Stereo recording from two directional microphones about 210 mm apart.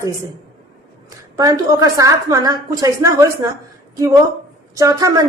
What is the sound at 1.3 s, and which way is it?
Speech, 15° right (ahead or behind).